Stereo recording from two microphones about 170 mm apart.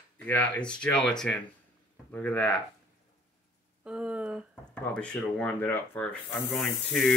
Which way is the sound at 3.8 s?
5° right (ahead or behind).